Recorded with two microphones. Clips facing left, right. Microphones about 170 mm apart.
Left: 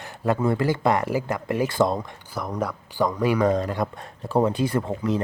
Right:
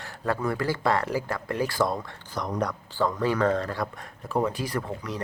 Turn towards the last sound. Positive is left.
turn(degrees=25)  # may be behind; listen again after turning